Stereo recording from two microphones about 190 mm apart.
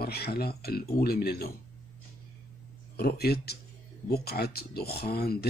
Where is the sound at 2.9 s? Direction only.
55° left (ahead or behind).